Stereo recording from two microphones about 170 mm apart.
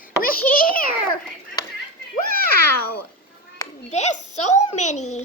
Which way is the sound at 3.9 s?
45° left (ahead or behind).